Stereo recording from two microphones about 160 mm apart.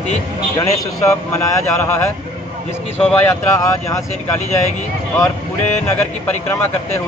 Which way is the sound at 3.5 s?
20° left (ahead or behind).